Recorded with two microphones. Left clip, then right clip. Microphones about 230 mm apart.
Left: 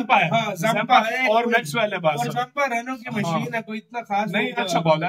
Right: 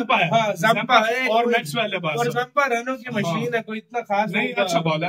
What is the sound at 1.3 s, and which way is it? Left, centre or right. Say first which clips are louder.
Speech: even; centre.